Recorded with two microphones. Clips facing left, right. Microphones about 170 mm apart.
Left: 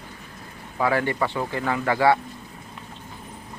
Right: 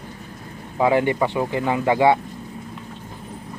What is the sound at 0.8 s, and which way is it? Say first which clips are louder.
Speech: right 5 dB; 20° right (ahead or behind).